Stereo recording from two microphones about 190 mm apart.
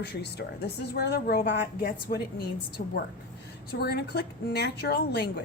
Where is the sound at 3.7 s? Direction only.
55° left (ahead or behind).